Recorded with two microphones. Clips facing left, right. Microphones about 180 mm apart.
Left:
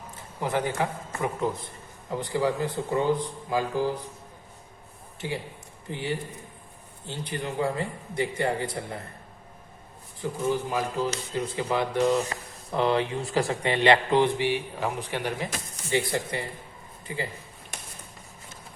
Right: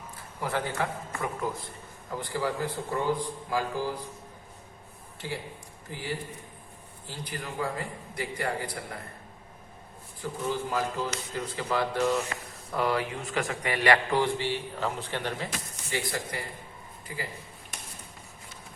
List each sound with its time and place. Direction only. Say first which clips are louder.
0.2 s a man's voice: left 4 dB; 20° left (ahead or behind)
5.2 s speech: left 3 dB; 15° left (ahead or behind)
10.5 s speech: left 1 dB; 15° left (ahead or behind)